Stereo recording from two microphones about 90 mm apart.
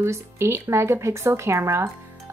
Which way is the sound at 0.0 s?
30° right (ahead or behind).